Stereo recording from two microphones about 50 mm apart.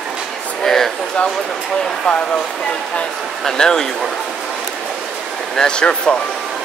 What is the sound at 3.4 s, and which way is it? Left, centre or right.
Speech, centre.